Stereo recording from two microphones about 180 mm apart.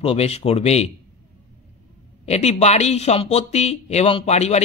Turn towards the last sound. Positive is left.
turn(degrees=40)  # may be behind; listen again after turning